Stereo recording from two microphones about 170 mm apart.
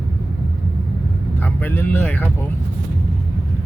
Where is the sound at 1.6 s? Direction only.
10° left (ahead or behind).